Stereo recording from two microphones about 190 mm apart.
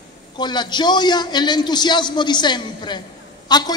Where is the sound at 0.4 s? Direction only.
25° left (ahead or behind).